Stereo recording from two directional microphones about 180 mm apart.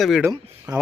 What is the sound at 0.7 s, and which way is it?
Speech, 20° right (ahead or behind).